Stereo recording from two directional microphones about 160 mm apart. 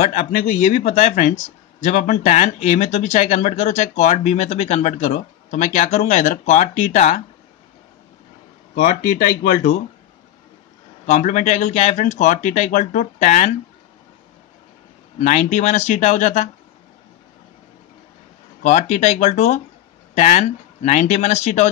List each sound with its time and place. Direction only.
0.0 s speech: 45° left (ahead or behind)
8.7 s speech: 50° left (ahead or behind)
11.1 s speech: 50° left (ahead or behind)
15.1 s speech: 45° left (ahead or behind)
18.6 s speech: 50° left (ahead or behind)